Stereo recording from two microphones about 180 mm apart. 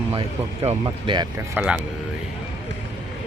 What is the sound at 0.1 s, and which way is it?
Speech, 30° right (ahead or behind).